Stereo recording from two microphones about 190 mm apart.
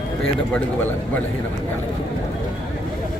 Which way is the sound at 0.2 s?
5° left (ahead or behind).